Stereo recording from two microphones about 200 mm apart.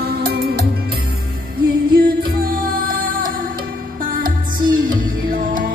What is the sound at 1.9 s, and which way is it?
Music, 50° right (ahead or behind).